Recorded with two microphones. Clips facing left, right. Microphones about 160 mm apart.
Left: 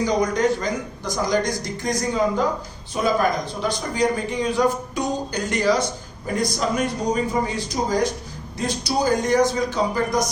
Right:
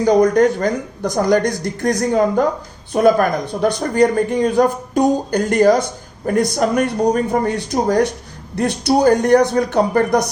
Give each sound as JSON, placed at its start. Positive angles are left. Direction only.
{"t": 0.0, "sound": "a man's voice", "side_deg": -55}